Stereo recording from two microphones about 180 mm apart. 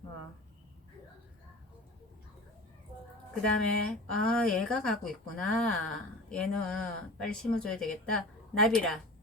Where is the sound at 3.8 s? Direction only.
5° left (ahead or behind).